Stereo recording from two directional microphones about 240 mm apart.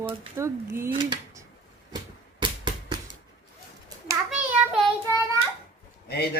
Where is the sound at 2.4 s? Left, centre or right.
Centre.